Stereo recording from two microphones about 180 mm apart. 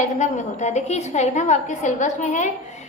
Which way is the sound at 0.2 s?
40° left (ahead or behind).